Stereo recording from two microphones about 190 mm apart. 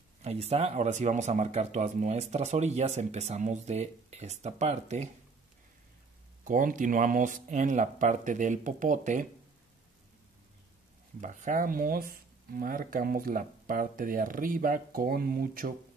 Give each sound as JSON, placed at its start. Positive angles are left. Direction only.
{"t": 0.2, "sound": "speech", "side_deg": -35}
{"t": 6.4, "sound": "speech", "side_deg": -45}
{"t": 11.1, "sound": "speech", "side_deg": -45}